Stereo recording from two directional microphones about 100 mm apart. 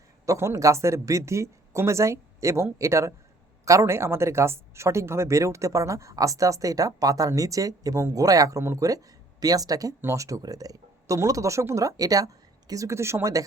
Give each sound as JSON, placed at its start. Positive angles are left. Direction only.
{"t": 0.3, "sound": "speech", "side_deg": -30}